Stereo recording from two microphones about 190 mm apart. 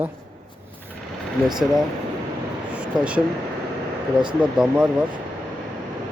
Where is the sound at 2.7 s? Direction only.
5° right (ahead or behind).